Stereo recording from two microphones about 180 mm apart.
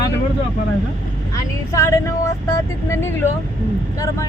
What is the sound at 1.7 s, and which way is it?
Speech, 15° left (ahead or behind).